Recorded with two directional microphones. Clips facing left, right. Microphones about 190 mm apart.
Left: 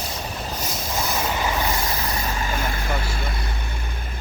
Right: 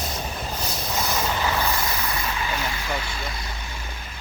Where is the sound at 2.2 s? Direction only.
45° left (ahead or behind).